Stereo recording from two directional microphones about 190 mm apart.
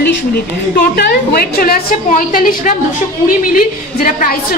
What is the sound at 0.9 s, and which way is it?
A woman's voice, 55° left (ahead or behind).